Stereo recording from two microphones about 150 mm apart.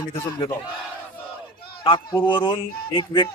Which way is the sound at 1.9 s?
30° left (ahead or behind).